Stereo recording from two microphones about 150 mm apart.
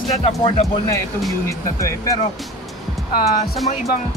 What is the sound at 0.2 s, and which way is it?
Speech, 45° left (ahead or behind).